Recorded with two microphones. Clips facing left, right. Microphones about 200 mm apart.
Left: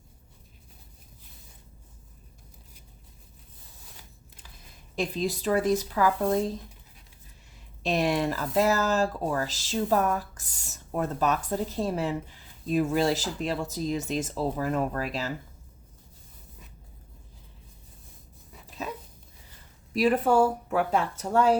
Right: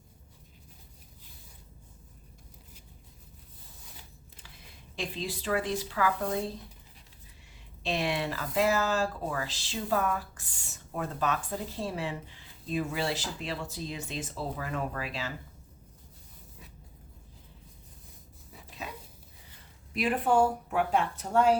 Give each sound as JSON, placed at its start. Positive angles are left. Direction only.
{"t": 4.9, "sound": "speech", "side_deg": 40}
{"t": 7.9, "sound": "speech", "side_deg": 40}
{"t": 19.9, "sound": "speech", "side_deg": 40}